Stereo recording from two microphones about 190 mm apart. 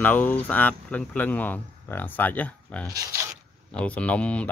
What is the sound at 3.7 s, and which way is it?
Speech, 5° left (ahead or behind).